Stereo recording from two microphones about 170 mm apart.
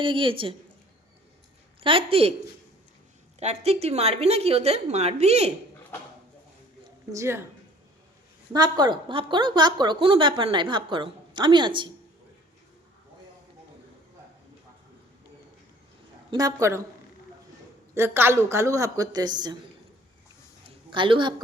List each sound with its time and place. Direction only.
0.0 s a woman's voice: 30° right (ahead or behind)
1.8 s a woman's voice: 30° right (ahead or behind)
3.4 s a woman's voice: 40° right (ahead or behind)
7.1 s a woman's voice: 15° right (ahead or behind)
8.5 s a woman's voice: 25° right (ahead or behind)
16.3 s a woman's voice: 20° right (ahead or behind)
17.9 s a woman's voice: 15° right (ahead or behind)
20.7 s a woman's voice: 30° right (ahead or behind)